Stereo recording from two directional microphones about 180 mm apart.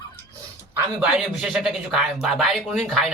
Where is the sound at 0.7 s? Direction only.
5° right (ahead or behind).